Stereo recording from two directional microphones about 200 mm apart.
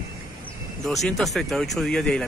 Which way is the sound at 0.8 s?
Centre (ahead or behind).